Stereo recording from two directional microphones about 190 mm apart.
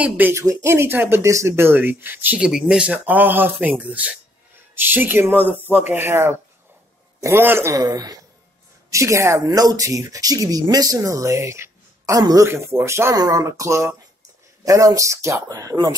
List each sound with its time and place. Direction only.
0.0 s speech: 10° right (ahead or behind)